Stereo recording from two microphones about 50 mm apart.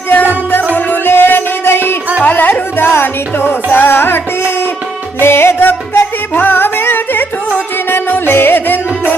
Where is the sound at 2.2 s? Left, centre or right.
Left.